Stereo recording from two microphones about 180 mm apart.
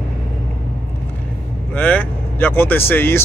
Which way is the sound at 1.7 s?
10° left (ahead or behind).